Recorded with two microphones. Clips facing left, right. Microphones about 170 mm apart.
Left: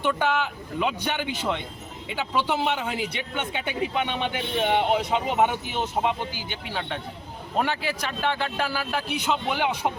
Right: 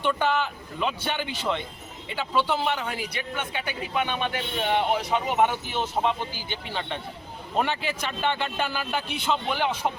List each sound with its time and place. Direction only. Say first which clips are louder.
0.0 s a man's voice: even; 10° left (ahead or behind)
9.2 s speech: even; 15° left (ahead or behind)